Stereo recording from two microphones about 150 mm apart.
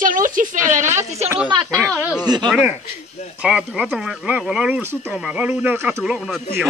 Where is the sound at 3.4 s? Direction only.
5° right (ahead or behind).